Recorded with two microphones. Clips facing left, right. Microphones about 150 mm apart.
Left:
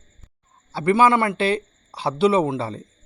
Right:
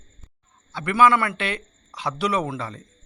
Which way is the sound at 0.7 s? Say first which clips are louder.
Left 2 dB; 30° left (ahead or behind).